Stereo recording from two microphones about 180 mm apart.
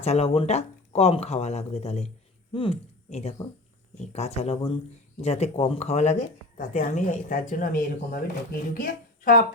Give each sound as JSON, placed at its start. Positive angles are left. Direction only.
{"t": 0.0, "sound": "a woman's voice", "side_deg": 35}